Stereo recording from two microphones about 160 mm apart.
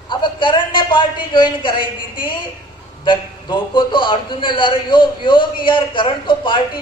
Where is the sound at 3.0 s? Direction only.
30° left (ahead or behind).